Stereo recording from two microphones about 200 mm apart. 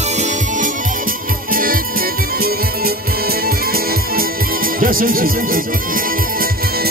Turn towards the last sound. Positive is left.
turn(degrees=-45)  # may be behind; listen again after turning